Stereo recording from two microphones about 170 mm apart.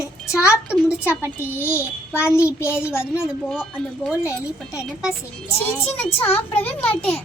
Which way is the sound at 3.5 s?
5° right (ahead or behind).